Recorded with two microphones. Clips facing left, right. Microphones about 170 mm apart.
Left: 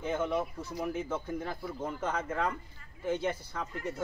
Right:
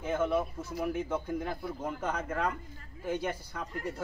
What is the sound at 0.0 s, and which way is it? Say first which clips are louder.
Speech: right 2 dB; 5° right (ahead or behind).